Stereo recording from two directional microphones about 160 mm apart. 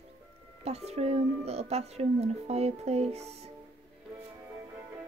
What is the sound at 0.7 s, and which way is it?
Speech, 40° right (ahead or behind).